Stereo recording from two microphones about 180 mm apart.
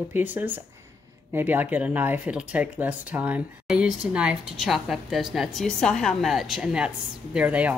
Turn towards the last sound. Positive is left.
turn(degrees=-5)  # may be behind; listen again after turning